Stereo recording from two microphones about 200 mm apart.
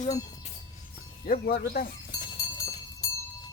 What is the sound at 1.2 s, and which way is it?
Speech, 50° left (ahead or behind).